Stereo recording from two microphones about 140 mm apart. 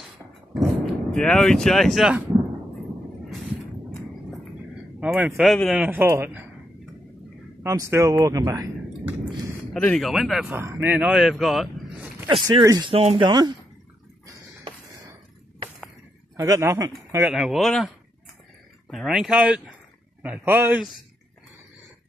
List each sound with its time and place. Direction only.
0.6 s speech: 5° left (ahead or behind)
5.0 s speech: 10° right (ahead or behind)
5.9 s speech: 15° right (ahead or behind)
7.6 s speech: 20° right (ahead or behind)
9.9 s speech: centre (ahead or behind)
10.5 s speech: 15° right (ahead or behind)
12.3 s speech: 35° right (ahead or behind)
12.9 s speech: 40° right (ahead or behind)
16.3 s speech: 20° right (ahead or behind)
17.3 s speech: centre (ahead or behind)